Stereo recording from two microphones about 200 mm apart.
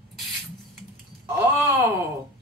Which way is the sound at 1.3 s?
10° right (ahead or behind).